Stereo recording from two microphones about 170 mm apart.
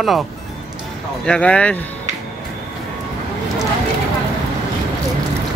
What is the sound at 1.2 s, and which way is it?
Speech, 5° left (ahead or behind).